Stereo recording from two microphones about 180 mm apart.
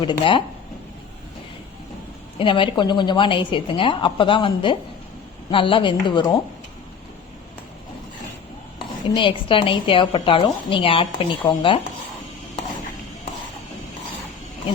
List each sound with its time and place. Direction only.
0.0 s a woman's voice: 25° left (ahead or behind)
2.4 s a woman's voice: 25° left (ahead or behind)
9.0 s a woman's voice: 25° left (ahead or behind)